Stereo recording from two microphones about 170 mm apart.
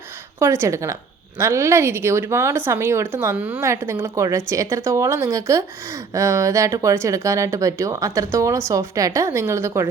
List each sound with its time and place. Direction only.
0.3 s speech: 15° right (ahead or behind)